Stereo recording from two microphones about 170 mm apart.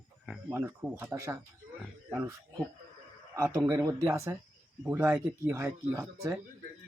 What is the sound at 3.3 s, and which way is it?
Speech, 15° right (ahead or behind).